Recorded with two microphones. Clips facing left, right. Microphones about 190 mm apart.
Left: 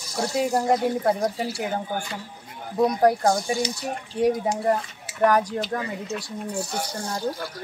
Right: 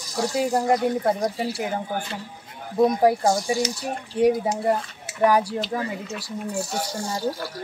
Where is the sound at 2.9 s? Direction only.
5° right (ahead or behind).